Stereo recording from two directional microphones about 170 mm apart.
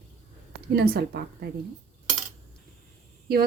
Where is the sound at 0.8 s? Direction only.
65° right (ahead or behind).